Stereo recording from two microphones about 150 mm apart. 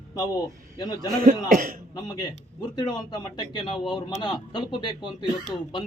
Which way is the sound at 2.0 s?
25° left (ahead or behind).